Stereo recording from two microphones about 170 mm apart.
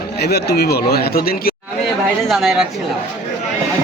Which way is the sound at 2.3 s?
5° right (ahead or behind).